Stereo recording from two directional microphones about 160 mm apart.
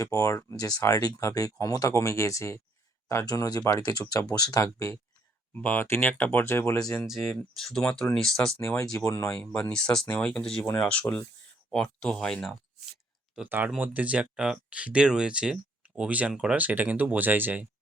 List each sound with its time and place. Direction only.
0.0 s speech: 20° left (ahead or behind)
7.0 s speech: centre (ahead or behind)
9.0 s speech: 20° left (ahead or behind)
9.3 s speech: 10° left (ahead or behind); by 17.7 s 10° right (ahead or behind)